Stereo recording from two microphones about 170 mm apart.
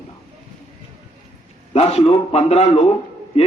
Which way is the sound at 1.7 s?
35° left (ahead or behind).